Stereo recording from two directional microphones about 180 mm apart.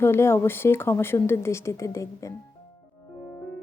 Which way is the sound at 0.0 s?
15° left (ahead or behind).